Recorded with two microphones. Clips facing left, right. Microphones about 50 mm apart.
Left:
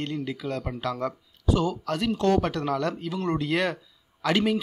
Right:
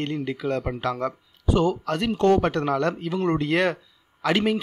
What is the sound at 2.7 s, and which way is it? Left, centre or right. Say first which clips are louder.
A man's voice: right 4 dB; right.